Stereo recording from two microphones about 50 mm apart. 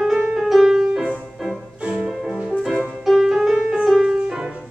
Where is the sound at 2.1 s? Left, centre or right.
Centre.